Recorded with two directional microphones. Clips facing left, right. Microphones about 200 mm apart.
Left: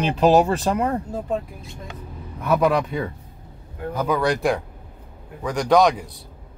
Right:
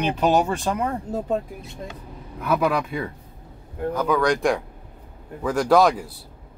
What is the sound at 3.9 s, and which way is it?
Speech, 10° left (ahead or behind).